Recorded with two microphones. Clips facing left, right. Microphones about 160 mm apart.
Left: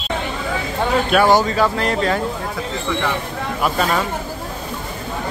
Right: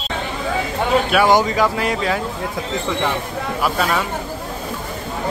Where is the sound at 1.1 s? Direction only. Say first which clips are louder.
Left 2 dB; 10° right (ahead or behind).